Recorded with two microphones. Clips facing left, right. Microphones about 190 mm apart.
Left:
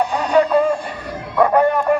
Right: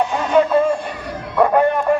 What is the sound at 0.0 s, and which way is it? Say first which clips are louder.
Music: even; 15° left (ahead or behind).